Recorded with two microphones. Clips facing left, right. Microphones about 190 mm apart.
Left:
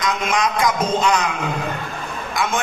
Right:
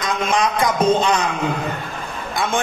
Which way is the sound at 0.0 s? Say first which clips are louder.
Right 1 dB; 30° right (ahead or behind).